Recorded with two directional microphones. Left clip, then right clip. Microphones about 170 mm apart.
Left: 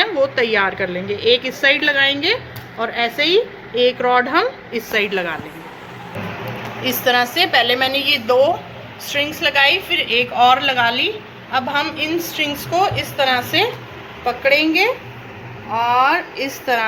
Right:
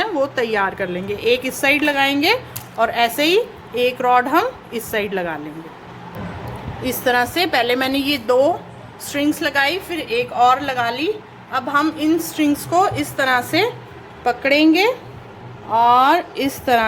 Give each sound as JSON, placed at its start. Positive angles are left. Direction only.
{"t": 0.0, "sound": "a woman's voice", "side_deg": -40}
{"t": 6.8, "sound": "a woman's voice", "side_deg": -45}
{"t": 14.3, "sound": "a woman's voice", "side_deg": -75}